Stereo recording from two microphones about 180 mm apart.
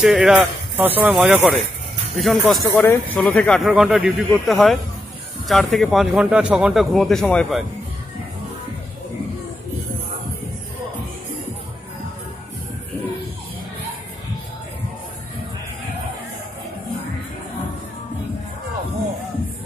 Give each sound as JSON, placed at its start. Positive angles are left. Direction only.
{"t": 0.0, "sound": "speech", "side_deg": -5}